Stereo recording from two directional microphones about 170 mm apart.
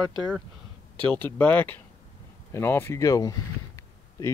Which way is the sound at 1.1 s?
10° left (ahead or behind).